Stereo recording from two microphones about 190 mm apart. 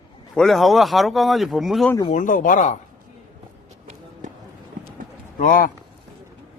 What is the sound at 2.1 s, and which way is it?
Speech, 45° left (ahead or behind).